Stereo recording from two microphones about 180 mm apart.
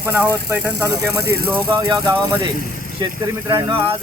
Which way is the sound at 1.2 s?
60° right (ahead or behind).